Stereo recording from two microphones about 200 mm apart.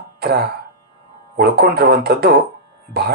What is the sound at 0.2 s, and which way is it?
Speech, 55° right (ahead or behind).